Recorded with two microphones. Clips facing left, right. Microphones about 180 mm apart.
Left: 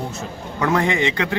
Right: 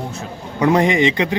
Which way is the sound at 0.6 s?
20° right (ahead or behind).